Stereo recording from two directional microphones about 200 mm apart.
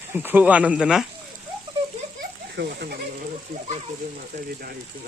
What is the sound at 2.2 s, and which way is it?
Splash, 55° right (ahead or behind).